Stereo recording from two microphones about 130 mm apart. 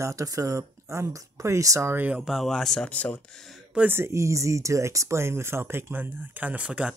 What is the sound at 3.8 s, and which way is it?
Speech, 15° right (ahead or behind).